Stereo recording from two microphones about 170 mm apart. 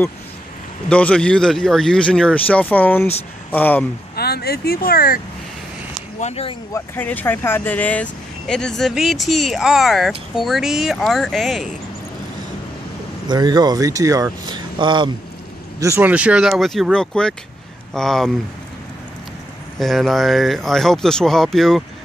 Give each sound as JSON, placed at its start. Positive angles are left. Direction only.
{"t": 0.8, "sound": "speech", "side_deg": 5}
{"t": 4.1, "sound": "speech", "side_deg": 65}
{"t": 6.1, "sound": "speech", "side_deg": 40}
{"t": 6.7, "sound": "speech", "side_deg": 10}
{"t": 13.3, "sound": "speech", "side_deg": -25}
{"t": 15.8, "sound": "speech", "side_deg": -15}
{"t": 19.8, "sound": "speech", "side_deg": 0}